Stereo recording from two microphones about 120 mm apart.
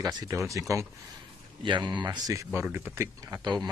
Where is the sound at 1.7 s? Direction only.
40° right (ahead or behind); by 3.4 s 20° right (ahead or behind).